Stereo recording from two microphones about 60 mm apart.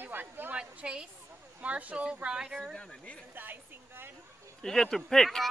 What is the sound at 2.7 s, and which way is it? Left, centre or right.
Speech, centre.